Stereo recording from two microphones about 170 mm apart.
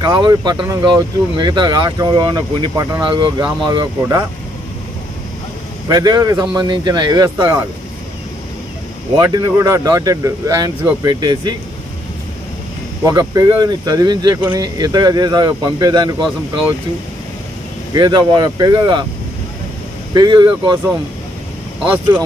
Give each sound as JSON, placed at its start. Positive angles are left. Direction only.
{"t": 0.0, "sound": "speech", "side_deg": -25}
{"t": 5.9, "sound": "speech", "side_deg": -20}
{"t": 9.2, "sound": "speech", "side_deg": -20}
{"t": 13.0, "sound": "speech", "side_deg": -20}
{"t": 17.9, "sound": "speech", "side_deg": -25}
{"t": 20.2, "sound": "speech", "side_deg": -25}